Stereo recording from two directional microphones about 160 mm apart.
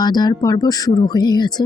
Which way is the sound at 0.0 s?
25° left (ahead or behind).